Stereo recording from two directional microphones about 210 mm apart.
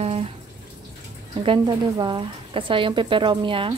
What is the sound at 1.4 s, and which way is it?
A woman's voice, 20° right (ahead or behind).